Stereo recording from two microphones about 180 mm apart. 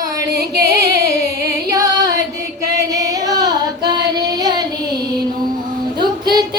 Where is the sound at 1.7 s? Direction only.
20° right (ahead or behind).